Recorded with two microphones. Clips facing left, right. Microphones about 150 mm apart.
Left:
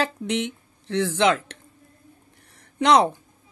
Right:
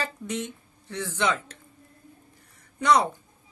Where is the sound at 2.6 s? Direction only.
85° left.